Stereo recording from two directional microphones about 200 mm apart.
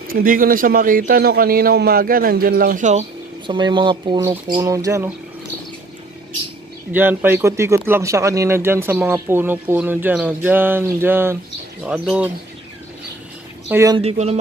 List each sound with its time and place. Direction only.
0.1 s a man's voice: 45° right (ahead or behind)
3.4 s speech: 20° right (ahead or behind)
6.9 s speech: 10° right (ahead or behind)
13.7 s speech: 15° right (ahead or behind)
13.9 s speech: 30° right (ahead or behind)